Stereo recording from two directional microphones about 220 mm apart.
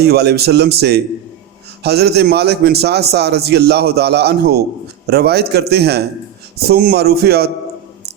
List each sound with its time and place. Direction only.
0.0 s a man's voice: 45° right (ahead or behind)